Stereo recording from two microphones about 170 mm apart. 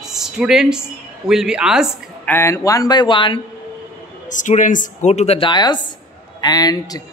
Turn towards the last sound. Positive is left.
turn(degrees=20)  # may be behind; listen again after turning